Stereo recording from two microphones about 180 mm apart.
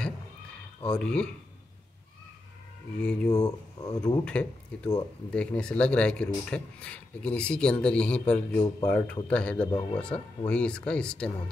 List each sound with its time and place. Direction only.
0.8 s speech: 5° left (ahead or behind)
3.0 s speech: 5° left (ahead or behind)
3.3 s speech: 20° left (ahead or behind)
4.2 s speech: 5° left (ahead or behind)